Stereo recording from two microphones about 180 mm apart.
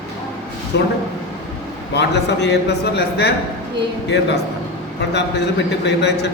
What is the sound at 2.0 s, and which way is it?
A man's voice, 70° left (ahead or behind).